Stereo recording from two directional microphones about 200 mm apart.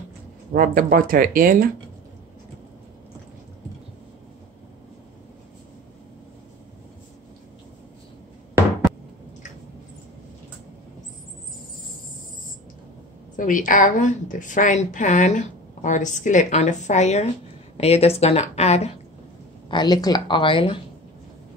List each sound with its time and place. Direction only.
0.5 s speech: 45° right (ahead or behind)
13.4 s a woman's voice: 40° left (ahead or behind)
19.7 s a woman's voice: 20° left (ahead or behind)